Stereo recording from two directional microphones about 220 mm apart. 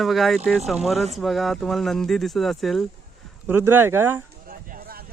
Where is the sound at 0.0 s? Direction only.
Centre (ahead or behind).